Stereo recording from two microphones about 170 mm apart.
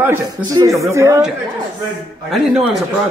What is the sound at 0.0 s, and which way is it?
Speech, 10° right (ahead or behind).